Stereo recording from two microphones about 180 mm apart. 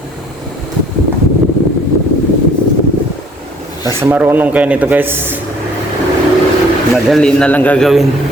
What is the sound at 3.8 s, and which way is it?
A man's voice, 15° right (ahead or behind).